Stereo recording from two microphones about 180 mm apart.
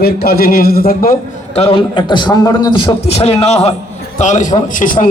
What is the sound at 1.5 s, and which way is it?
A man's voice, 30° left (ahead or behind).